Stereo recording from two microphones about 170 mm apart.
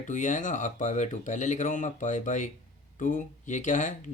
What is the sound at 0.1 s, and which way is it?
Speech, 50° left (ahead or behind).